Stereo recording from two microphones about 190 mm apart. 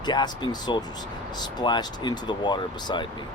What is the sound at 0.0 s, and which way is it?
Speech, 25° left (ahead or behind).